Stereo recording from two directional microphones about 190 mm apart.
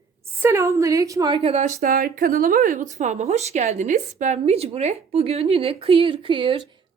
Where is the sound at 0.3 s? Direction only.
15° right (ahead or behind).